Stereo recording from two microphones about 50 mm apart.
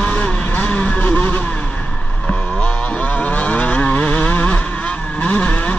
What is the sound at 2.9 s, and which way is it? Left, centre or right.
Vehicle, left.